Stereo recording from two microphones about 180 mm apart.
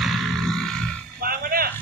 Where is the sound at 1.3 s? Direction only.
55° right (ahead or behind).